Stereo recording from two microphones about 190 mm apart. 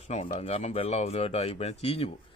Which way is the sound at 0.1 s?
35° left (ahead or behind).